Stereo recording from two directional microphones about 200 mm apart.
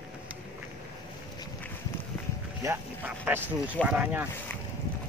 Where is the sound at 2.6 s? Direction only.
10° right (ahead or behind).